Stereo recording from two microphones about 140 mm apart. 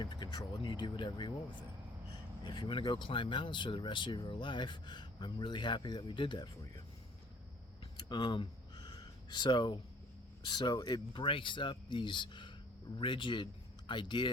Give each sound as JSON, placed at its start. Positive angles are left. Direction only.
{"t": 0.0, "sound": "speech", "side_deg": 30}
{"t": 2.4, "sound": "speech", "side_deg": 35}
{"t": 8.1, "sound": "a sound", "side_deg": 35}
{"t": 10.4, "sound": "speech", "side_deg": 30}